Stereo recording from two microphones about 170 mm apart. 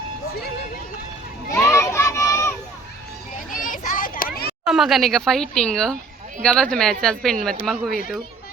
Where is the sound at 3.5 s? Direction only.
50° left (ahead or behind).